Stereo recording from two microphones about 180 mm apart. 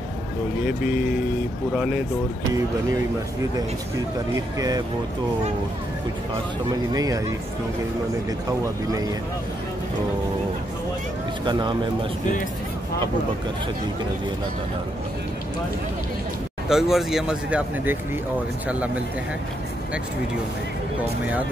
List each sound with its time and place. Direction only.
4.6 s speech: 20° right (ahead or behind)
6.9 s speech: 20° right (ahead or behind)
8.5 s speech: 20° right (ahead or behind)
16.6 s speech: centre (ahead or behind)